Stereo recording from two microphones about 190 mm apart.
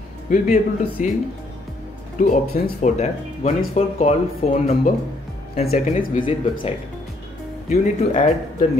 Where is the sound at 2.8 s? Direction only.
35° left (ahead or behind).